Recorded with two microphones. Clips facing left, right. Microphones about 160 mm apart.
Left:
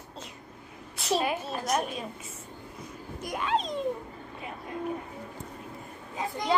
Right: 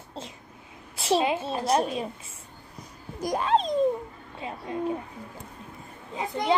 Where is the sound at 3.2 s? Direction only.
35° right (ahead or behind).